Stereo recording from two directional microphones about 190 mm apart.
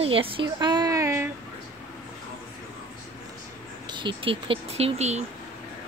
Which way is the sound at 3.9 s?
25° right (ahead or behind).